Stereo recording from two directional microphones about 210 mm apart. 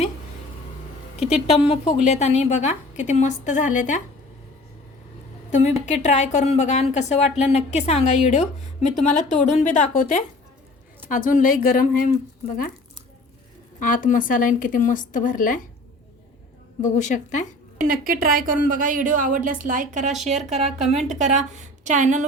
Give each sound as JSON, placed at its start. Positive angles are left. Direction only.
{"t": 1.2, "sound": "a woman's voice", "side_deg": 0}
{"t": 1.5, "sound": "a woman's voice", "side_deg": 25}
{"t": 5.5, "sound": "a woman's voice", "side_deg": 35}
{"t": 13.7, "sound": "a woman's voice", "side_deg": 40}
{"t": 16.8, "sound": "a woman's voice", "side_deg": 35}
{"t": 17.7, "sound": "a woman's voice", "side_deg": -40}